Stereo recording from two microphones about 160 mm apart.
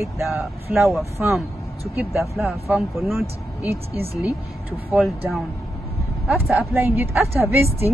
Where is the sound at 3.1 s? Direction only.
15° right (ahead or behind).